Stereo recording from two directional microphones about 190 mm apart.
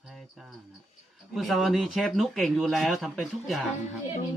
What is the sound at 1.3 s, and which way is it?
Speech, centre (ahead or behind).